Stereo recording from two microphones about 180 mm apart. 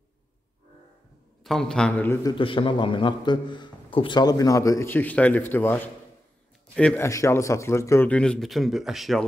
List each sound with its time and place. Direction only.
1.4 s a man's voice: 5° left (ahead or behind)
2.3 s a man's voice: 30° left (ahead or behind); by 7.0 s 5° left (ahead or behind)
7.0 s speech: 15° left (ahead or behind); by 9.2 s centre (ahead or behind)